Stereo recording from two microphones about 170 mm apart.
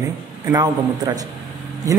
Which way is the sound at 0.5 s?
20° right (ahead or behind).